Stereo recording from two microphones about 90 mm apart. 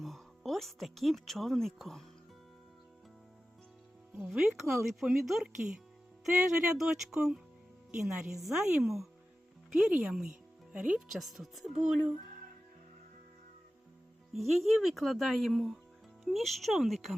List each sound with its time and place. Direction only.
0.0 s a woman's voice: centre (ahead or behind)
4.3 s speech: 5° right (ahead or behind)
11.1 s speech: centre (ahead or behind)
14.3 s speech: centre (ahead or behind)